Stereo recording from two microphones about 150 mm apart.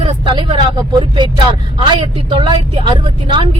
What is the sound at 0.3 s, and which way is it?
Speech, 30° right (ahead or behind).